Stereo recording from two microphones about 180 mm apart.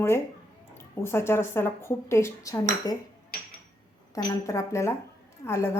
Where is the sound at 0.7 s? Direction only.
15° left (ahead or behind).